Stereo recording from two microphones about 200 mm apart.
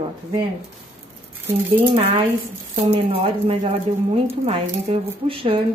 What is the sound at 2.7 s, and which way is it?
Speech, 30° right (ahead or behind).